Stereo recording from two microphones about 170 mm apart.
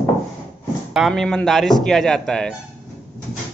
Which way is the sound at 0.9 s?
Centre (ahead or behind).